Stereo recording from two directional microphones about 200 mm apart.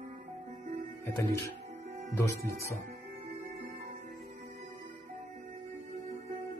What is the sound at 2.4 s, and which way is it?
Speech, 50° right (ahead or behind).